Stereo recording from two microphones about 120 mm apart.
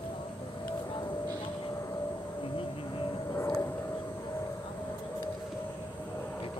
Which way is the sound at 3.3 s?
25° left (ahead or behind).